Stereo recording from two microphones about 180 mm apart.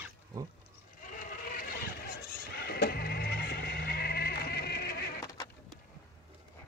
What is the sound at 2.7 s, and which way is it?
Sheep, 60° left (ahead or behind).